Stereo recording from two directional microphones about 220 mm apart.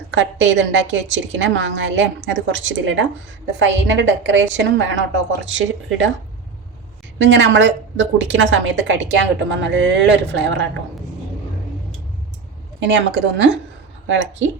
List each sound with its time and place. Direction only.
0.1 s a woman's voice: 55° right (ahead or behind)
7.2 s a woman's voice: 55° right (ahead or behind)
12.8 s a woman's voice: 55° right (ahead or behind)